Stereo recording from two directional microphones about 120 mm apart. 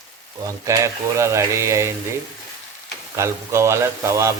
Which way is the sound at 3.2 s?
25° right (ahead or behind).